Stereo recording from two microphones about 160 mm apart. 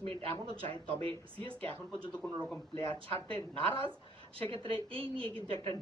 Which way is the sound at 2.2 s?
5° left (ahead or behind).